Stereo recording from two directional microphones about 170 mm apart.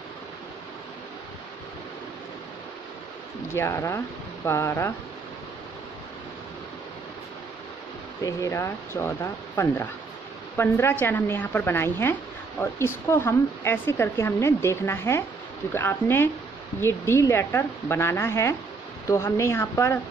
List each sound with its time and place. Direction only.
3.5 s a woman's voice: 15° left (ahead or behind)
8.2 s a woman's voice: 20° left (ahead or behind)